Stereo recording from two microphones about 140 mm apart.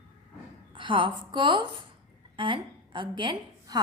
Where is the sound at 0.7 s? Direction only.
35° right (ahead or behind).